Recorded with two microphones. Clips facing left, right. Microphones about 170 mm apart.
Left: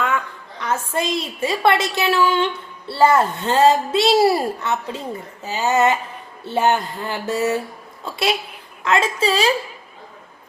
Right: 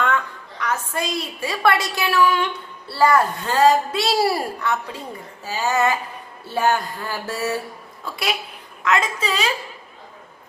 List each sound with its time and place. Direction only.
0.6 s a woman's voice: 25° left (ahead or behind)